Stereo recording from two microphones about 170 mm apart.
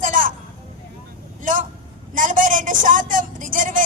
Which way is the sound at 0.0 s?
50° right (ahead or behind).